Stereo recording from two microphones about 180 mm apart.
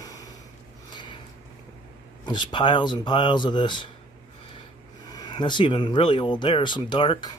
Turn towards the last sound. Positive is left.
turn(degrees=25)  # may be behind; listen again after turning